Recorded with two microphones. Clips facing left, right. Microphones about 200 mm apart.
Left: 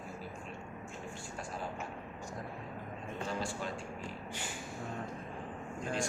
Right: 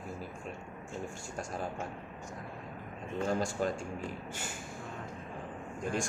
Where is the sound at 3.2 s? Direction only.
45° right (ahead or behind).